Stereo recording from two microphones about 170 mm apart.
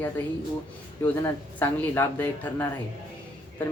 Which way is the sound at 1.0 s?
15° left (ahead or behind).